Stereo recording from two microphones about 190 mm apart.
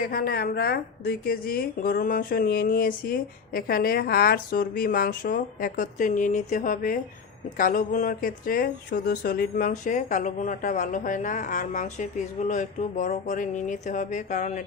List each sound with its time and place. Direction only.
0.0 s a woman's voice: 45° left (ahead or behind)